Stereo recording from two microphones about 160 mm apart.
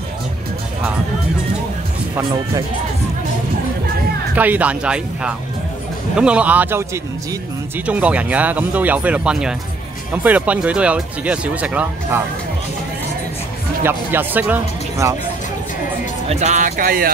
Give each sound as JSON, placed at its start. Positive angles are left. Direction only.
{"t": 4.4, "sound": "speech", "side_deg": -10}
{"t": 13.8, "sound": "speech", "side_deg": -10}
{"t": 16.3, "sound": "speech", "side_deg": -45}